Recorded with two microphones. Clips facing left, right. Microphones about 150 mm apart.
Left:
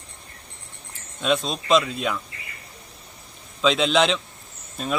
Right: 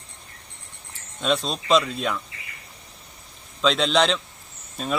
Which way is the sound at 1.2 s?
Centre (ahead or behind).